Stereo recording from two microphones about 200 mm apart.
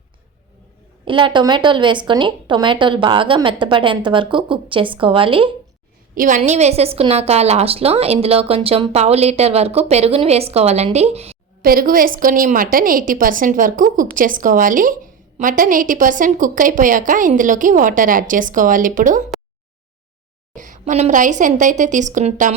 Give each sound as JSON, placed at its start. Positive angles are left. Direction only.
{"t": 1.0, "sound": "a woman's voice", "side_deg": -25}
{"t": 6.1, "sound": "a woman's voice", "side_deg": -40}
{"t": 11.6, "sound": "a woman's voice", "side_deg": -45}
{"t": 20.6, "sound": "a woman's voice", "side_deg": -40}